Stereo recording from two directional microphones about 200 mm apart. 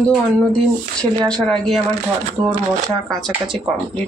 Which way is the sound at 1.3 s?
Centre (ahead or behind).